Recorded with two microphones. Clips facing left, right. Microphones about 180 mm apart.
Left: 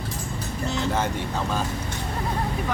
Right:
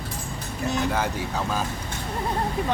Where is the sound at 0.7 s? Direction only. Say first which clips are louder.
Right 1 dB; 15° right (ahead or behind).